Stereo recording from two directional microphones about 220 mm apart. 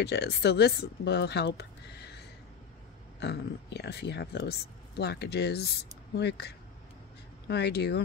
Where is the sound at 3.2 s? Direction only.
50° left (ahead or behind).